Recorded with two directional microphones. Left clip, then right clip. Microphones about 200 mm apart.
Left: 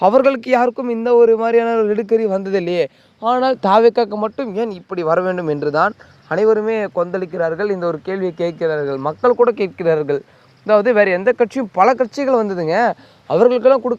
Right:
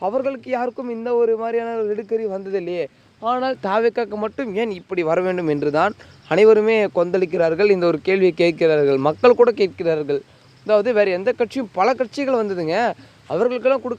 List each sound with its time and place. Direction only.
0.0 s a man's voice: 55° left (ahead or behind); by 4.1 s 25° left (ahead or behind)
4.1 s speech: 10° left (ahead or behind)
6.2 s speech: 20° right (ahead or behind)
9.4 s speech: 5° right (ahead or behind)
9.7 s speech: 15° left (ahead or behind)
13.2 s speech: 35° left (ahead or behind)